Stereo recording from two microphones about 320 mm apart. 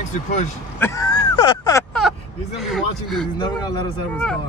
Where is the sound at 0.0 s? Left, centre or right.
Left.